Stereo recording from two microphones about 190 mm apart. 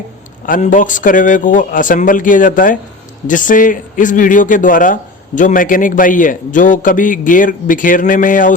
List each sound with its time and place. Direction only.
0.4 s a man's voice: 45° left (ahead or behind)